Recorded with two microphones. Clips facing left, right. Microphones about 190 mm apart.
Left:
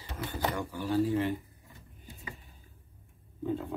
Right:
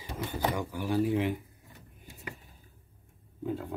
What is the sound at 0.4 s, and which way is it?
Speech, 10° right (ahead or behind).